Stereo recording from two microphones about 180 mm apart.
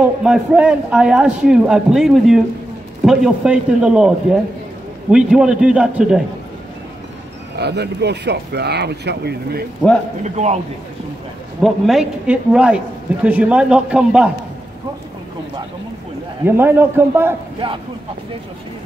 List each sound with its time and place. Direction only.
0.2 s a man's voice: 5° right (ahead or behind)
7.5 s speech: 65° right (ahead or behind)
10.2 s a man's voice: 40° right (ahead or behind)
11.6 s a man's voice: centre (ahead or behind)
16.4 s a man's voice: 10° right (ahead or behind)
17.6 s speech: 30° right (ahead or behind)